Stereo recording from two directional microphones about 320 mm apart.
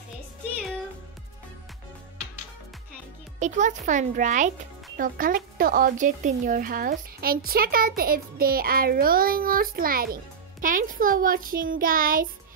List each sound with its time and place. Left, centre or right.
3.3 s speech: right